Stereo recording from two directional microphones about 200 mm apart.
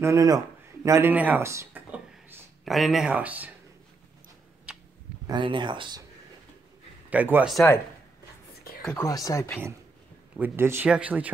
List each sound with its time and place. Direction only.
0.0 s speech: 15° right (ahead or behind)
5.2 s speech: 25° right (ahead or behind)
7.1 s speech: 10° right (ahead or behind)
7.5 s speech: 10° left (ahead or behind)
8.8 s speech: 15° left (ahead or behind)
10.3 s speech: 10° right (ahead or behind)